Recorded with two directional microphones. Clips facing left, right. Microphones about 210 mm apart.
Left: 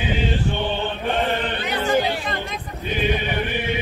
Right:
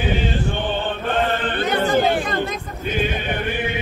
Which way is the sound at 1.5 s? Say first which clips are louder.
Right 2 dB; 50° right (ahead or behind).